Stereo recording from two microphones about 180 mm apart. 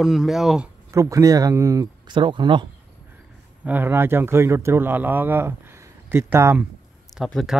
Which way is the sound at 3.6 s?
10° right (ahead or behind).